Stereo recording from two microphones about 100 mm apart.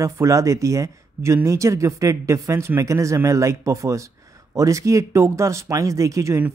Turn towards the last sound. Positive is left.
turn(degrees=-30)  # may be behind; listen again after turning